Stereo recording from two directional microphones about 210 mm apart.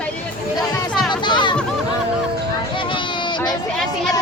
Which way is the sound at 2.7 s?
25° left (ahead or behind).